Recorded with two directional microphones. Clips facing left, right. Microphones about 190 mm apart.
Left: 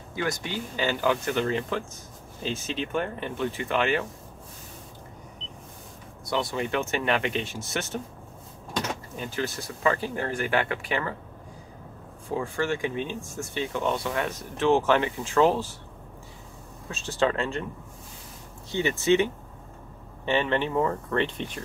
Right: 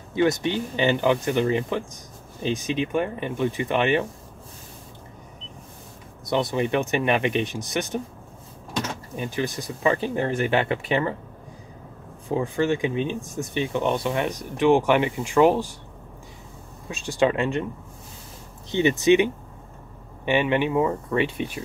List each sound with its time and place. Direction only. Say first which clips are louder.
0.1 s speech: right 9 dB; 25° right (ahead or behind)
6.2 s speech: right 5 dB; 20° right (ahead or behind)
9.1 s speech: right 7 dB; 15° right (ahead or behind)
12.3 s speech: right 5 dB; 20° right (ahead or behind)
16.9 s speech: right 4 dB; 15° right (ahead or behind)
18.7 s speech: right 5 dB; 20° right (ahead or behind)